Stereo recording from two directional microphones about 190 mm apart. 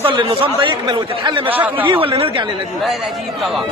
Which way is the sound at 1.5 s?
10° right (ahead or behind).